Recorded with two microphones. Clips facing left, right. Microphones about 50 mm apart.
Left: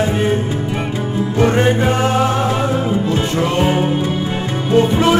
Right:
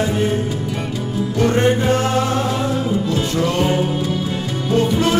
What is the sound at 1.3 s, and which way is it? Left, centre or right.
Music, left.